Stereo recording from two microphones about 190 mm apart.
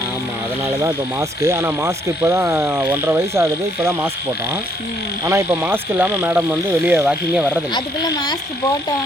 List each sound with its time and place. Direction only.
0.8 s speech: 15° right (ahead or behind)
5.2 s speech: 15° right (ahead or behind)
7.7 s speech: 20° left (ahead or behind)